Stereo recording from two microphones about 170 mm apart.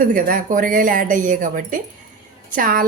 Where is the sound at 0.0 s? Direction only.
55° right (ahead or behind).